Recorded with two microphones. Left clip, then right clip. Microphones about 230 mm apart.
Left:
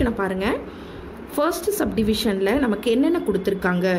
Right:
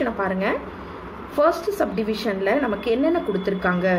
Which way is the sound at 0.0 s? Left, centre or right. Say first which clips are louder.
Even; left.